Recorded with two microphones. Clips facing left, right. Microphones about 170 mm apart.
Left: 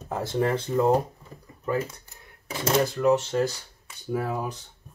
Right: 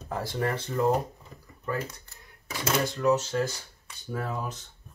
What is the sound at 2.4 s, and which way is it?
Speech, 30° left (ahead or behind).